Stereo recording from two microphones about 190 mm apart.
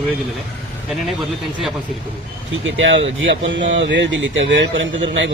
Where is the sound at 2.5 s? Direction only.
85° right.